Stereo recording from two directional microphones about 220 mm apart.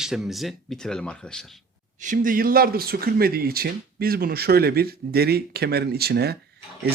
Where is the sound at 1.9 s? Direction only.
35° right (ahead or behind).